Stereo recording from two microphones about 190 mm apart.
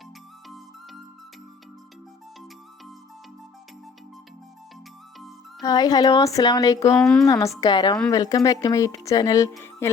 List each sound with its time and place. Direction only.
0.4 s music: centre (ahead or behind)
5.6 s a woman's voice: 20° left (ahead or behind)
6.9 s speech: 5° left (ahead or behind)
7.3 s a woman's voice: 15° left (ahead or behind)